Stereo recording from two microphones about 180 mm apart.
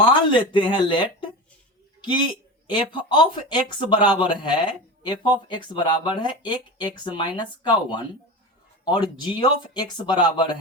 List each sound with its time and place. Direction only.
0.0 s speech: 30° left (ahead or behind)
2.6 s speech: 25° left (ahead or behind)